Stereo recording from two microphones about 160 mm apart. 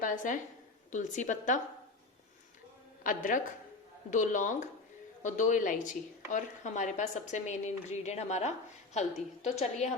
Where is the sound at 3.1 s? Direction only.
55° left (ahead or behind).